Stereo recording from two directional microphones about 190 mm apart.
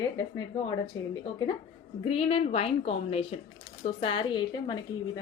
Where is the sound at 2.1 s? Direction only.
30° left (ahead or behind).